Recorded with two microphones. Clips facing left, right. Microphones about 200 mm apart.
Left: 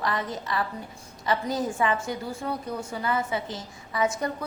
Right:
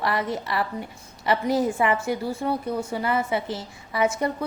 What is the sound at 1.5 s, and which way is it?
Speech, 20° right (ahead or behind).